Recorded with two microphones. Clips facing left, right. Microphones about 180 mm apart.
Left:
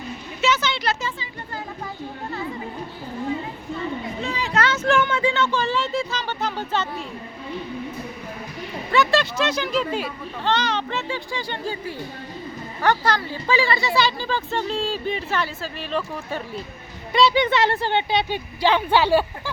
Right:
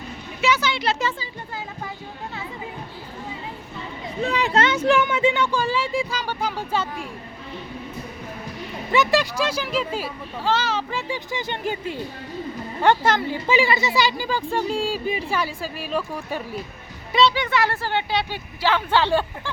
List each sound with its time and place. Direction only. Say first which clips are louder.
0.4 s a sound: even; 10° right (ahead or behind)
4.2 s a child's voice: right 10 dB; 60° right (ahead or behind)
4.5 s speech: even; 20° right (ahead or behind)
8.9 s speech: even; 15° right (ahead or behind); by 17.3 s centre (ahead or behind)
17.3 s speech: left 4 dB; 20° left (ahead or behind)